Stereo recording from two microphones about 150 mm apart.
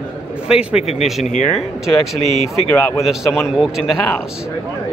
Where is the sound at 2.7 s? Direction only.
15° left (ahead or behind).